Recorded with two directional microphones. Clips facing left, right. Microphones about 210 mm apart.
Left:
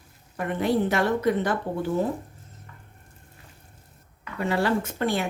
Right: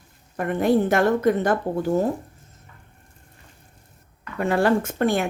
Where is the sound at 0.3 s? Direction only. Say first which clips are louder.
Right 4 dB; 50° right (ahead or behind).